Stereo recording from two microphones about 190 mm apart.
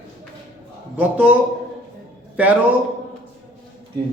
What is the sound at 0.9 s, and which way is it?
Speech, 10° right (ahead or behind).